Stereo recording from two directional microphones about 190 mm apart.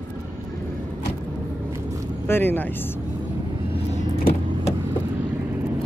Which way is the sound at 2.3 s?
10° left (ahead or behind).